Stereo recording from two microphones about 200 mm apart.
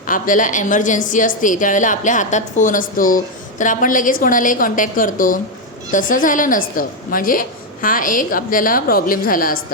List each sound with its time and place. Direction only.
0.1 s a woman's voice: 40° left (ahead or behind)